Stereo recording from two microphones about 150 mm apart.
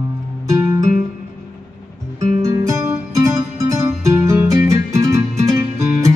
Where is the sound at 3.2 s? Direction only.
20° right (ahead or behind).